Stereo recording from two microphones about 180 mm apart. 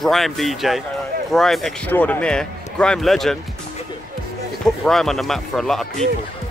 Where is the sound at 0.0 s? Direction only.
Centre (ahead or behind).